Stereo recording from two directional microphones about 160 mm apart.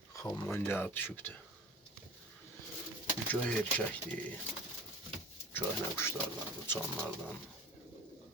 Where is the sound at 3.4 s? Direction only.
10° left (ahead or behind).